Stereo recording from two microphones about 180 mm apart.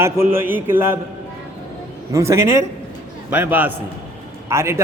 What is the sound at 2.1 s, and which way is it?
A man's voice, 15° right (ahead or behind).